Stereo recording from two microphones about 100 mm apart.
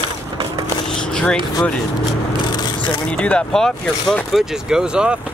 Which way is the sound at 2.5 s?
45° left (ahead or behind).